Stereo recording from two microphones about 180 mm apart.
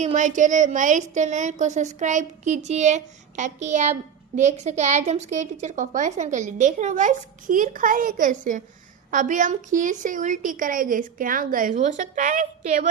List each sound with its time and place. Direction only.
0.0 s a woman's voice: 40° right (ahead or behind)